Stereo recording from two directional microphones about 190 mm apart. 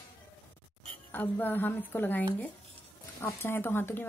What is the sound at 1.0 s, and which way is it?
A woman's voice, 10° left (ahead or behind).